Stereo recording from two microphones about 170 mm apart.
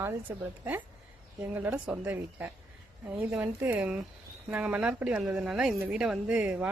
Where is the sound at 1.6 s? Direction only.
10° right (ahead or behind).